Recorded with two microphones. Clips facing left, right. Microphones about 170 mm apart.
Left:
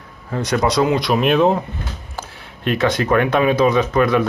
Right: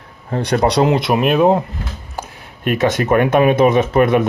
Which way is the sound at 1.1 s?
5° right (ahead or behind).